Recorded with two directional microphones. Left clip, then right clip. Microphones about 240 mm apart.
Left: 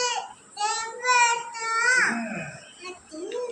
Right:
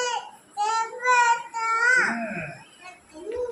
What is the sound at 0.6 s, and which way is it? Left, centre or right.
Child singing, centre.